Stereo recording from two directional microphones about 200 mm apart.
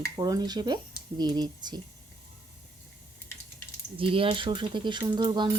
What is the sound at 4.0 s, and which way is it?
Speech, 25° right (ahead or behind).